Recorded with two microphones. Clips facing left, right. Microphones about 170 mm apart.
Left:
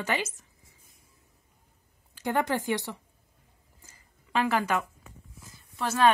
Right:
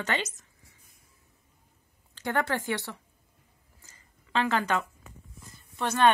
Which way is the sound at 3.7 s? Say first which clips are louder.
Left 1 dB; 10° left (ahead or behind).